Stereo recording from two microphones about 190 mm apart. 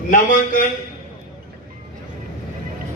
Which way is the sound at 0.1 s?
45° left (ahead or behind).